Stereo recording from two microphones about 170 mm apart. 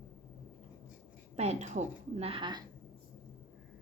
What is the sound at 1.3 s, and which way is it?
A woman's voice, 40° right (ahead or behind).